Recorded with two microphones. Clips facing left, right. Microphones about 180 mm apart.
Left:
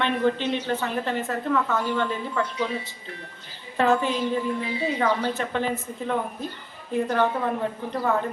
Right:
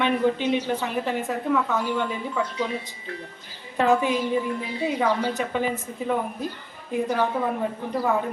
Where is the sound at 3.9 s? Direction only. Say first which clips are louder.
Right 2 dB; 10° right (ahead or behind).